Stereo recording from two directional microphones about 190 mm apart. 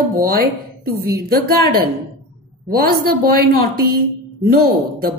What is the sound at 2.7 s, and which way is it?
Speech, 50° right (ahead or behind).